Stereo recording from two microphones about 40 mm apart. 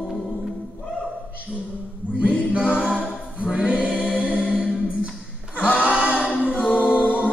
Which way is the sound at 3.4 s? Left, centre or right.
Right.